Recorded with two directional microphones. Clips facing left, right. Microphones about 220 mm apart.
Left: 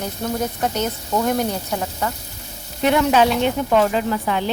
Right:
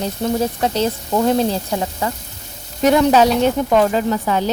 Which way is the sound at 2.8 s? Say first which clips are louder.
Right 3 dB; 40° right (ahead or behind).